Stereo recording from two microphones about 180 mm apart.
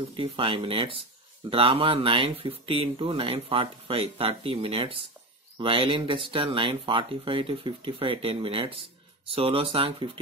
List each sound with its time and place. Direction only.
0.1 s speech: 30° right (ahead or behind)